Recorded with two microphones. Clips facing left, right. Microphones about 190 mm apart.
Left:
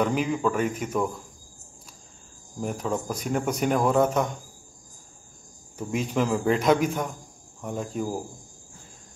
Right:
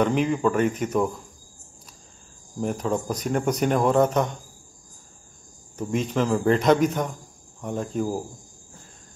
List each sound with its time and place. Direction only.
0.0 s speech: centre (ahead or behind)
2.6 s speech: 5° left (ahead or behind)
5.8 s speech: 10° left (ahead or behind)